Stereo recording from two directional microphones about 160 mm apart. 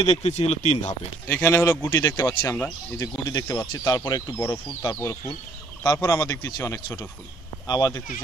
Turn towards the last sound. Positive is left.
turn(degrees=25)  # may be behind; listen again after turning